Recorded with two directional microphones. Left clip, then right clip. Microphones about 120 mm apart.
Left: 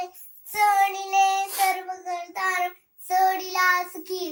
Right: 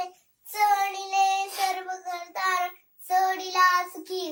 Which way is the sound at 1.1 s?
35° right (ahead or behind).